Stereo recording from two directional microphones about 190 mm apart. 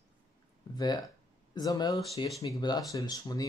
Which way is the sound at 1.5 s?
20° left (ahead or behind).